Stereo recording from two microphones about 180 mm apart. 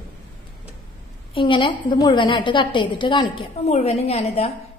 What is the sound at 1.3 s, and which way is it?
A woman's voice, 30° left (ahead or behind).